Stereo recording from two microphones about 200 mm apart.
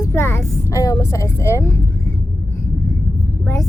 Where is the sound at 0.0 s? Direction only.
10° left (ahead or behind).